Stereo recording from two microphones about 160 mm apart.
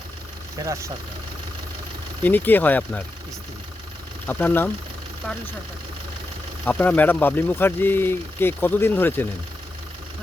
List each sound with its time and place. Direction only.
0.6 s speech: 20° right (ahead or behind)
2.2 s speech: 10° left (ahead or behind)
4.3 s speech: 10° left (ahead or behind)
6.7 s speech: 10° left (ahead or behind)